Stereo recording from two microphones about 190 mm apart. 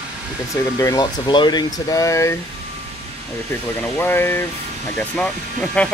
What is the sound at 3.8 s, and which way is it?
Speech, 10° left (ahead or behind).